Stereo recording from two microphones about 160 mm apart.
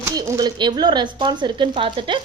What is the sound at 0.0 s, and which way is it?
Speech, 25° right (ahead or behind).